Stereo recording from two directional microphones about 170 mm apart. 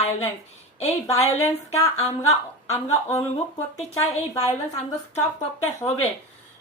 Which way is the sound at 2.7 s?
40° left (ahead or behind).